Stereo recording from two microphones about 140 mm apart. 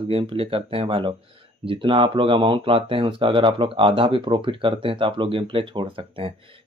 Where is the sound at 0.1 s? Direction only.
40° right (ahead or behind).